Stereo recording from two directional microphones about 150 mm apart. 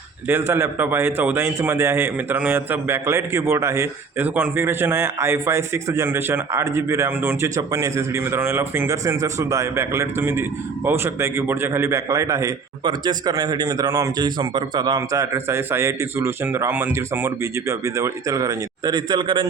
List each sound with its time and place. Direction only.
0.3 s a man's voice: 15° right (ahead or behind); by 19.5 s 30° right (ahead or behind)